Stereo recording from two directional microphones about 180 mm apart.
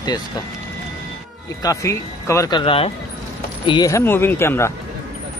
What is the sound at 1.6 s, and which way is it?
Speech, 20° left (ahead or behind).